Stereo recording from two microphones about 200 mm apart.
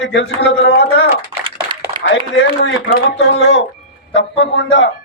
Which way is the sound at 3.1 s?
65° left (ahead or behind).